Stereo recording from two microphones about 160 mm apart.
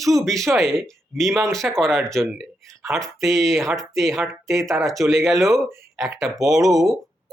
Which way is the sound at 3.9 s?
Centre (ahead or behind).